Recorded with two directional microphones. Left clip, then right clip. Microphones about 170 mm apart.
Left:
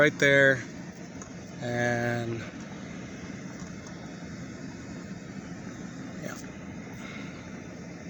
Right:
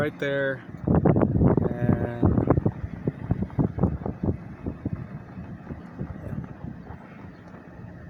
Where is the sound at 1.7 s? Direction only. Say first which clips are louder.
Left 1 dB; 15° left (ahead or behind).